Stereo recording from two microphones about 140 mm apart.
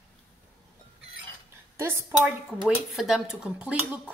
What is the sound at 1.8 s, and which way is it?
Speech, 15° right (ahead or behind).